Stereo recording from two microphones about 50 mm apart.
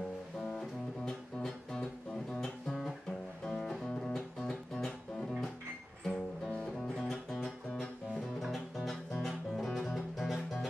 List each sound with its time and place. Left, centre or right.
0.4 s music: centre
6.0 s music: centre
7.1 s music: centre